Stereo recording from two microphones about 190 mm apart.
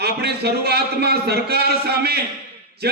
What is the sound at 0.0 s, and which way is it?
A man's voice, 60° right (ahead or behind).